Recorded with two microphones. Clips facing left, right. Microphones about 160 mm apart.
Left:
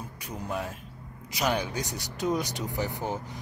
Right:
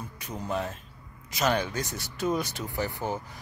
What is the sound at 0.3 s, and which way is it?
Speech, 10° left (ahead or behind).